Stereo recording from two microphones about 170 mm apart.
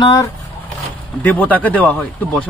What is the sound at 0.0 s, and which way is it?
Speech, 20° left (ahead or behind).